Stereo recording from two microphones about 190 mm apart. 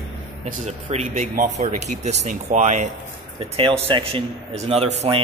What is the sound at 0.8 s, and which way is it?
Speech, 35° right (ahead or behind).